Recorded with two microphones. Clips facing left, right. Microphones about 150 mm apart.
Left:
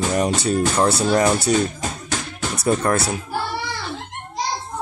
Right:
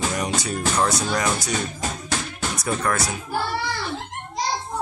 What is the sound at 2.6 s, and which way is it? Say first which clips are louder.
Speech: left 6 dB; 30° left (ahead or behind).